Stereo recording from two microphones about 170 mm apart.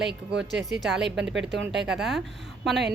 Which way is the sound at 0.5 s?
Centre (ahead or behind).